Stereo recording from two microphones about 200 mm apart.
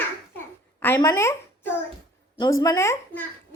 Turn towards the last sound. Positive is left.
turn(degrees=15)  # may be behind; listen again after turning